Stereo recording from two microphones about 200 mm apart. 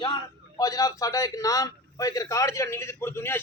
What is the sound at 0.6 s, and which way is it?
A man's voice, 15° left (ahead or behind).